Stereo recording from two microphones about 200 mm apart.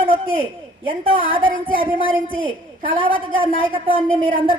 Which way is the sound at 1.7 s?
45° right (ahead or behind).